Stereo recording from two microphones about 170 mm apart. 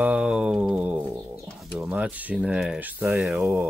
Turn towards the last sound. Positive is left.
turn(degrees=-10)  # may be behind; listen again after turning